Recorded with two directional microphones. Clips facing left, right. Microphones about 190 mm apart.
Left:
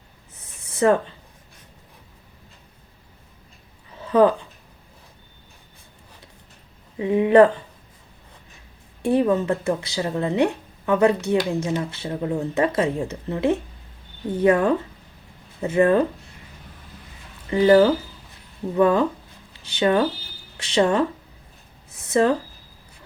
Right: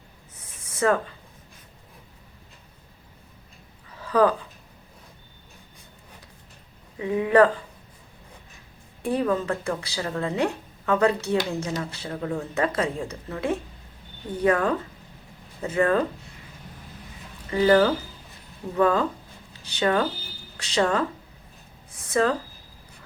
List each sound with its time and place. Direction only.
0.8 s speech: 20° left (ahead or behind)
3.9 s a sound: 25° left (ahead or behind)
7.0 s speech: 25° left (ahead or behind)
9.0 s speech: 25° left (ahead or behind)
17.5 s speech: 20° left (ahead or behind)
22.1 s speech: 25° left (ahead or behind)